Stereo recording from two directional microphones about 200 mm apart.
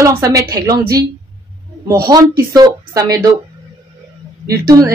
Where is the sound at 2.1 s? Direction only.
20° right (ahead or behind).